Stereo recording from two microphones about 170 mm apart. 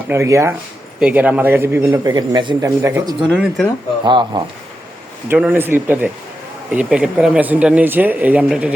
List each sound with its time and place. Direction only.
0.1 s a man's voice: 15° right (ahead or behind)
3.3 s speech: 5° right (ahead or behind)
4.0 s speech: 25° right (ahead or behind)
5.3 s a man's voice: 10° right (ahead or behind)